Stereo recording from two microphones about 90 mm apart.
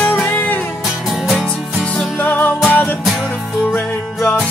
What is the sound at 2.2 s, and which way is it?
Music, 20° left (ahead or behind).